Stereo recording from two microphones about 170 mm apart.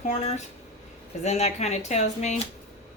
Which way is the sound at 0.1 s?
40° left (ahead or behind).